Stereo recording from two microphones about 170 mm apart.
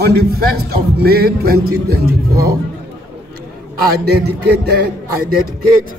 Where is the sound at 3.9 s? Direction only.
70° right (ahead or behind).